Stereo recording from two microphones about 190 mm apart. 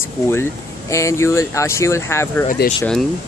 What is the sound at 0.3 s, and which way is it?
Speech, 15° left (ahead or behind).